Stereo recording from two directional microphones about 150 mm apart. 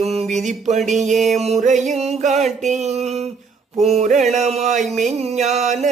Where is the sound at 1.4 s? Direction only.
50° right (ahead or behind).